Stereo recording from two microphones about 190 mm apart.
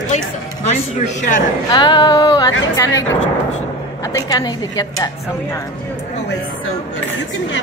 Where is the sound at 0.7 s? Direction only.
40° left (ahead or behind).